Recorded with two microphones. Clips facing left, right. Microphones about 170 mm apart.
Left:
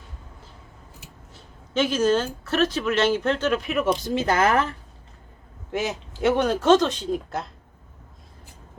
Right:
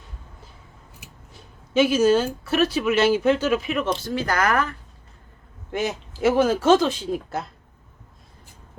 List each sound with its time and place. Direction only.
0.9 s speech: 10° right (ahead or behind); by 4.7 s 25° left (ahead or behind)
5.7 s speech: centre (ahead or behind)